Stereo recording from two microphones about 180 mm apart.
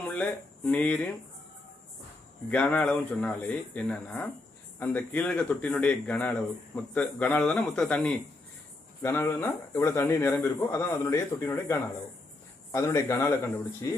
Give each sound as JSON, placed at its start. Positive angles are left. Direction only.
{"t": 0.0, "sound": "speech", "side_deg": 10}
{"t": 2.5, "sound": "speech", "side_deg": 10}